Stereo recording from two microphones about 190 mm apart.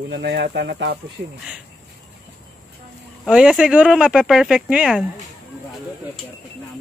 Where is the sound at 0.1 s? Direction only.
65° right (ahead or behind).